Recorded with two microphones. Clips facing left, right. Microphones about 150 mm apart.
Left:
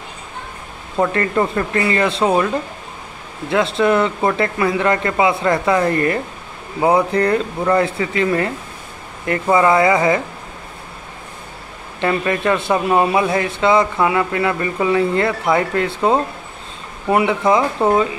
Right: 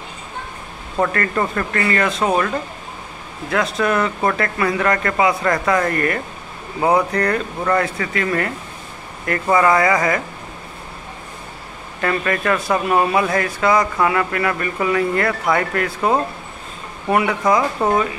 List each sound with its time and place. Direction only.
1.1 s speech: 20° left (ahead or behind)
3.4 s speech: 25° left (ahead or behind)
6.8 s speech: 10° left (ahead or behind)
7.1 s speech: 25° left (ahead or behind)
12.0 s speech: 20° left (ahead or behind)